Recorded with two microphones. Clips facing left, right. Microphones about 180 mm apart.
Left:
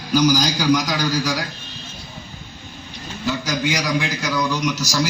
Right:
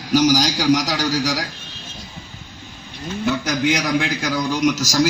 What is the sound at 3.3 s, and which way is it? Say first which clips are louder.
A man's voice: right 3 dB; 60° right (ahead or behind).